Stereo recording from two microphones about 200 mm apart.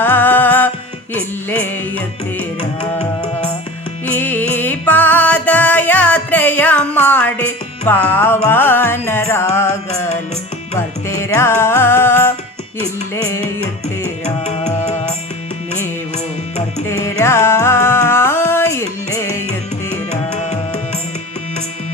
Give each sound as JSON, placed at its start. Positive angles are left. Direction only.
{"t": 0.0, "sound": "music", "side_deg": 10}
{"t": 4.0, "sound": "music", "side_deg": 10}
{"t": 14.3, "sound": "tabla", "side_deg": 35}
{"t": 16.1, "sound": "tabla", "side_deg": 35}
{"t": 17.2, "sound": "music", "side_deg": 15}